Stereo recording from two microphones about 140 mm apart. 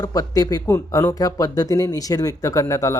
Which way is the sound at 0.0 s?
25° left (ahead or behind).